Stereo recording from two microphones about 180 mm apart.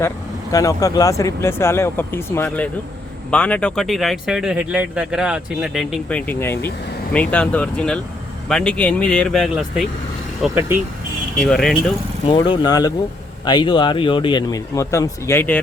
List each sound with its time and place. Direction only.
0.5 s speech: 20° left (ahead or behind); by 9.8 s centre (ahead or behind)
10.4 s speech: 10° right (ahead or behind)
11.4 s speech: 5° left (ahead or behind)
12.3 s a man's voice: 25° left (ahead or behind)